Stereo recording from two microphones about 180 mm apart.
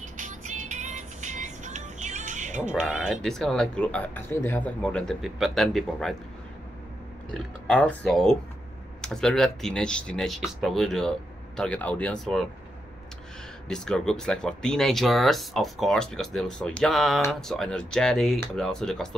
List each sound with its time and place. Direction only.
0.2 s music: 45° right (ahead or behind)
2.7 s speech: 5° right (ahead or behind)
7.6 s speech: 5° left (ahead or behind)
13.7 s speech: 5° left (ahead or behind)